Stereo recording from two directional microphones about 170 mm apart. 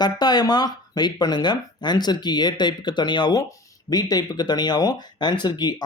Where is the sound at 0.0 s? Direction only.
25° left (ahead or behind).